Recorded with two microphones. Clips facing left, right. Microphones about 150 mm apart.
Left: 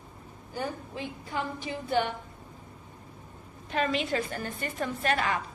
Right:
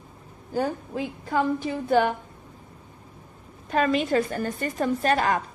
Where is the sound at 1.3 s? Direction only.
45° right (ahead or behind).